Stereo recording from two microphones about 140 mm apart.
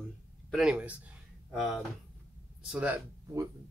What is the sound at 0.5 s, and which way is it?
Speech, 5° right (ahead or behind).